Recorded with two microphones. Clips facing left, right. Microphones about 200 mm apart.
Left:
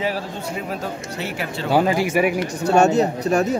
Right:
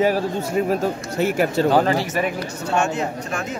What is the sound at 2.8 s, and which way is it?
Speech, 40° left (ahead or behind).